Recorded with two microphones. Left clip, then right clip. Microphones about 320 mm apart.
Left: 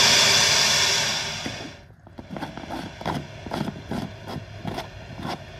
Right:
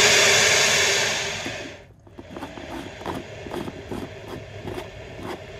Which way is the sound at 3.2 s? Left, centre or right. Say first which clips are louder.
Left 1 dB; centre.